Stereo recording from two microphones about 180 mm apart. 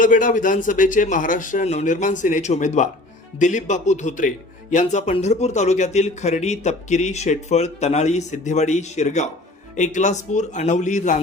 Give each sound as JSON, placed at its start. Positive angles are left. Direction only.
{"t": 0.0, "sound": "a man's voice", "side_deg": 50}